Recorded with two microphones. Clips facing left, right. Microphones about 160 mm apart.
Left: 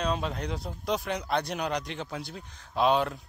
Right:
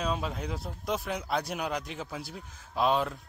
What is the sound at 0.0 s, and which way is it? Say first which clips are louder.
A man's voice: left 2 dB; 5° right (ahead or behind).